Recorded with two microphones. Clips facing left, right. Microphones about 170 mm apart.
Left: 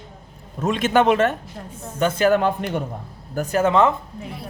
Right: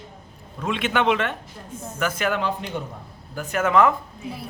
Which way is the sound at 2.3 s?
50° left (ahead or behind).